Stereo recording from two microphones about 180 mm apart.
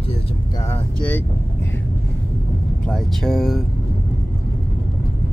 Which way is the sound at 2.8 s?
Centre (ahead or behind).